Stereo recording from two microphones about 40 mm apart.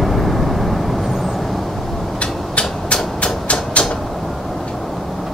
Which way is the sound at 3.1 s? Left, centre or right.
Left.